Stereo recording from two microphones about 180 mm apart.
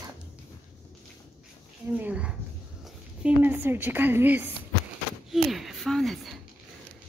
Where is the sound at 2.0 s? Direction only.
5° right (ahead or behind).